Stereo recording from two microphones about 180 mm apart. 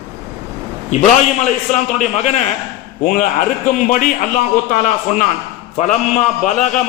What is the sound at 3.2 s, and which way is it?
A man's voice, 40° left (ahead or behind).